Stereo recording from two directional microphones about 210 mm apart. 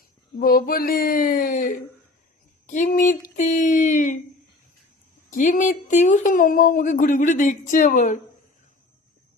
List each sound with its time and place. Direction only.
0.3 s speech: 45° left (ahead or behind)
5.3 s speech: 40° left (ahead or behind)